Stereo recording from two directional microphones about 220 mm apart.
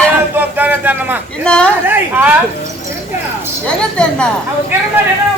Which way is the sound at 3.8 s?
5° left (ahead or behind).